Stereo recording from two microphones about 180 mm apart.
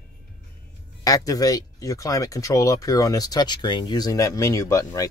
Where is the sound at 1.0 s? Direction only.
20° left (ahead or behind).